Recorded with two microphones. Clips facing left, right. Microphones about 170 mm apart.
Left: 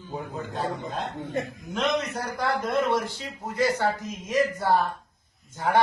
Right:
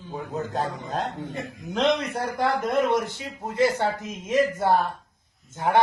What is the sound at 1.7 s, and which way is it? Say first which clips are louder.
A man's voice: right 3 dB; 30° right (ahead or behind).